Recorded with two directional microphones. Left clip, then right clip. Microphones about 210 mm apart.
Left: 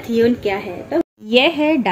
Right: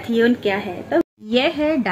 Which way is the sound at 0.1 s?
Centre (ahead or behind).